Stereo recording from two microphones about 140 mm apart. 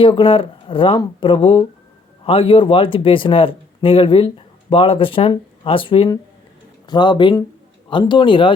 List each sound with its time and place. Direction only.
0.0 s speech: 35° left (ahead or behind)